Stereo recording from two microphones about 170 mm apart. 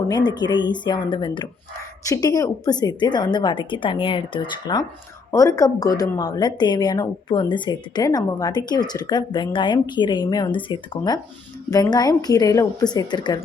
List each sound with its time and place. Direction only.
0.1 s a woman's voice: 25° left (ahead or behind)